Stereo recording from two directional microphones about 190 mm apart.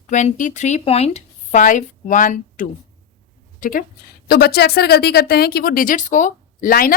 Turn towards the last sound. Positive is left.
turn(degrees=50)  # may be behind; listen again after turning